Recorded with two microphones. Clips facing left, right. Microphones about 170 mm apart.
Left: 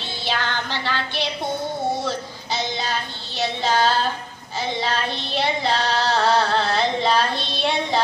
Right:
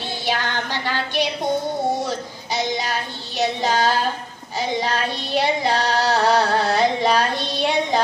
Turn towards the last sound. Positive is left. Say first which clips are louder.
# right 3 dB
turn(degrees=-15)  # may be behind; listen again after turning